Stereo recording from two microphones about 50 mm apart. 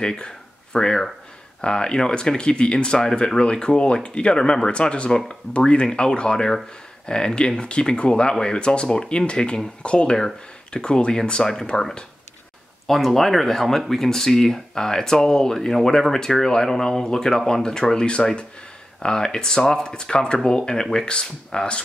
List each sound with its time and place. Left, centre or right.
0.0 s speech: centre
12.8 s speech: centre